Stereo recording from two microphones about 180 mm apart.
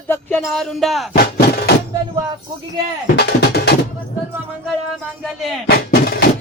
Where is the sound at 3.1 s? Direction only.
65° left (ahead or behind).